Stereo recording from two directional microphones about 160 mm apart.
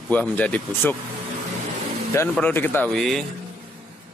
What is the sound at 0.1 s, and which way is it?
Speech, 10° left (ahead or behind).